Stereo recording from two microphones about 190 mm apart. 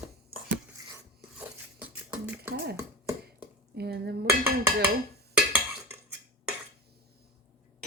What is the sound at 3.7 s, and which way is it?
Dishes, 55° right (ahead or behind).